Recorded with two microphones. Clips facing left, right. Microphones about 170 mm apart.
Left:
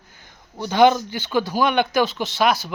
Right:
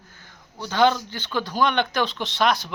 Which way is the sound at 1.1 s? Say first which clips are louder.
Left 5 dB; 10° left (ahead or behind).